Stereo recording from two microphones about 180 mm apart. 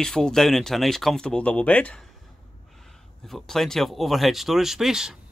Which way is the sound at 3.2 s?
Centre (ahead or behind).